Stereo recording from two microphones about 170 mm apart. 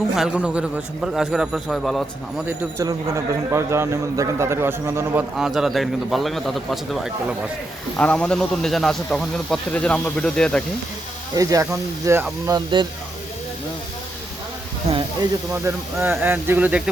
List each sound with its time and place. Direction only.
0.2 s speech: 5° right (ahead or behind)
2.5 s a man's voice: 15° right (ahead or behind)
5.4 s speech: centre (ahead or behind)
7.9 s speech: 5° left (ahead or behind)
11.3 s speech: 20° right (ahead or behind)
14.9 s snake: 35° right (ahead or behind)
15.6 s a man's voice: 15° right (ahead or behind)